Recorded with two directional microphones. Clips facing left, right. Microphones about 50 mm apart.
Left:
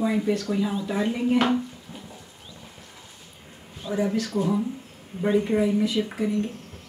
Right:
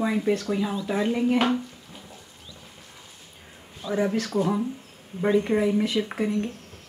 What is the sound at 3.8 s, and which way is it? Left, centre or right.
Speech, centre.